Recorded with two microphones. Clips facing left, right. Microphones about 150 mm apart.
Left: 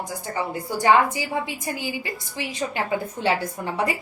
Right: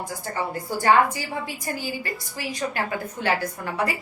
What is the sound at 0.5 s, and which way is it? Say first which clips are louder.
A woman's voice: left 1 dB; 20° left (ahead or behind).